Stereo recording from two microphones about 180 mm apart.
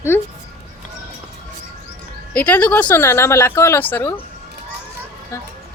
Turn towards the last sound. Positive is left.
turn(degrees=15)  # may be behind; listen again after turning